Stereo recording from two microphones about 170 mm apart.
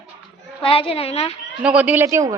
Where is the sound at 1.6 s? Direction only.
5° right (ahead or behind).